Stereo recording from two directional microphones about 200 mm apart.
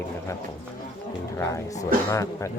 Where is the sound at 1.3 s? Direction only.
15° left (ahead or behind).